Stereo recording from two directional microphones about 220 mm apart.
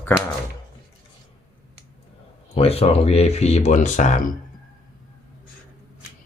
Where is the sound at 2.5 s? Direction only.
25° left (ahead or behind).